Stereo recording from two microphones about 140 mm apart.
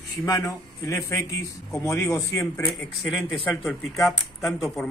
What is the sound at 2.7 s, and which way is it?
Speech, centre (ahead or behind).